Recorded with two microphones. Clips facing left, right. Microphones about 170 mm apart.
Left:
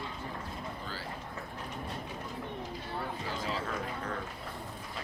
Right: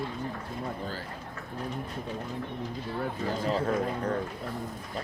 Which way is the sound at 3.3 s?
40° right (ahead or behind).